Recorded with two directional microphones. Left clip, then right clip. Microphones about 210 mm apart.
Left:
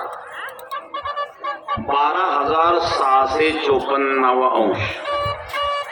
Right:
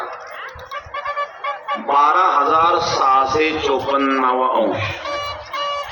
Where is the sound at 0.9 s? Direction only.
25° right (ahead or behind).